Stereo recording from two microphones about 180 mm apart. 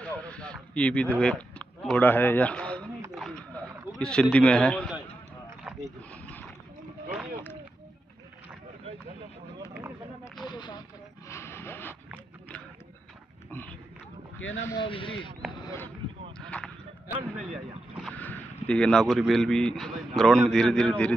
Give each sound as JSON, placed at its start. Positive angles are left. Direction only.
{"t": 0.0, "sound": "speech", "side_deg": 5}
{"t": 3.2, "sound": "a sound", "side_deg": 5}
{"t": 6.2, "sound": "wild animals", "side_deg": 5}
{"t": 10.4, "sound": "a sound", "side_deg": 25}
{"t": 11.2, "sound": "a sound", "side_deg": 15}
{"t": 13.5, "sound": "pig", "side_deg": 10}
{"t": 14.4, "sound": "speech", "side_deg": 90}
{"t": 14.7, "sound": "speech", "side_deg": 25}
{"t": 16.3, "sound": "basketball bounce", "side_deg": 5}
{"t": 18.1, "sound": "speech", "side_deg": 10}